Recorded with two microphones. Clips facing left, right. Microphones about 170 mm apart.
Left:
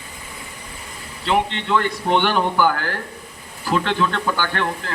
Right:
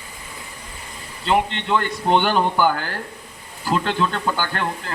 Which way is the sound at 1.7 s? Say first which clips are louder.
Even; 25° right (ahead or behind).